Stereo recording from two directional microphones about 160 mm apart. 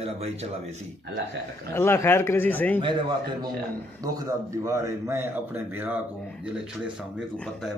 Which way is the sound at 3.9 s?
20° right (ahead or behind).